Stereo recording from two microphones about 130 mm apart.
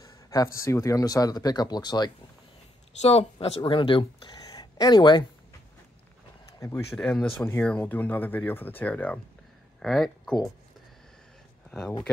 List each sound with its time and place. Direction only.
0.0 s a sound: 30° left (ahead or behind)
0.6 s speech: 25° left (ahead or behind)
3.0 s speech: 55° left (ahead or behind); by 5.2 s 30° left (ahead or behind)
7.0 s speech: 5° left (ahead or behind)